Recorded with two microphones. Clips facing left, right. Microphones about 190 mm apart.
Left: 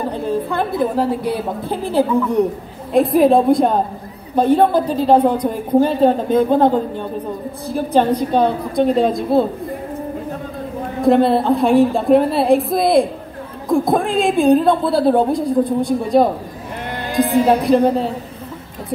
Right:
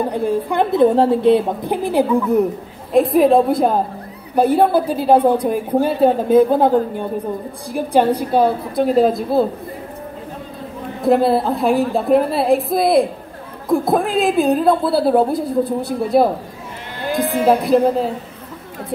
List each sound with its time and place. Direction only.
0.1 s a woman's voice: 15° right (ahead or behind)
2.9 s a woman's voice: centre (ahead or behind)
11.1 s a woman's voice: 5° right (ahead or behind)
17.5 s a woman's voice: centre (ahead or behind)